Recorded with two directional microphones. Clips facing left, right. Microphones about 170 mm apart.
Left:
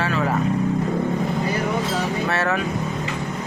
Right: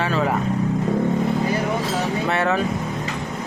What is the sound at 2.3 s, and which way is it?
Speech, 20° right (ahead or behind).